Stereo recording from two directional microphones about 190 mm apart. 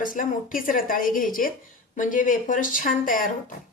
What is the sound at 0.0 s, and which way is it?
A woman's voice, 45° left (ahead or behind).